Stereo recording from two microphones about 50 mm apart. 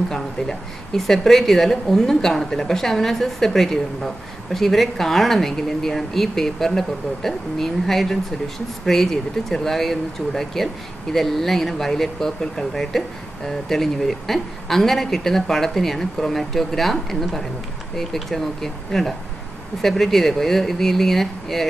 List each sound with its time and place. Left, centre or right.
0.1 s a woman's voice: centre